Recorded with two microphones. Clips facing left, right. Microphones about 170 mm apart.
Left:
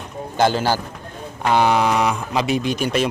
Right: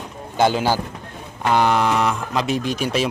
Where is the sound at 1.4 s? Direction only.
5° left (ahead or behind).